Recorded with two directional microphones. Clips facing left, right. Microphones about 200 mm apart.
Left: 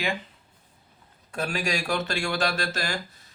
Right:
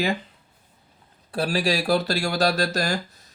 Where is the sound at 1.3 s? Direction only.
35° right (ahead or behind).